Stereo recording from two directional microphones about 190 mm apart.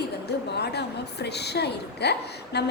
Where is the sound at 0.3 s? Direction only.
60° left (ahead or behind).